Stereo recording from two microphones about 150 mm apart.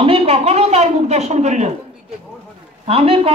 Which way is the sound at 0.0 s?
40° right (ahead or behind).